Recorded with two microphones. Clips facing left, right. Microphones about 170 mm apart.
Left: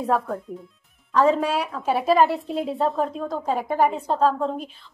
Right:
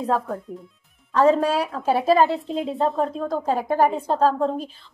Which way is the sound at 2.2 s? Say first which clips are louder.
Even; 20° right (ahead or behind).